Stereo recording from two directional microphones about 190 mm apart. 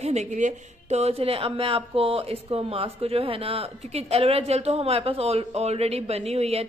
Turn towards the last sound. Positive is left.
turn(degrees=-35)  # may be behind; listen again after turning